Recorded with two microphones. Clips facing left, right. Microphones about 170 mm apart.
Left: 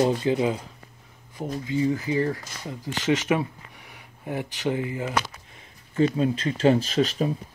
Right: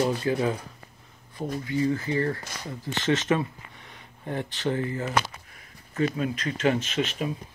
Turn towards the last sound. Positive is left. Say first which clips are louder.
# left 5 dB
turn(degrees=35)  # may be behind; listen again after turning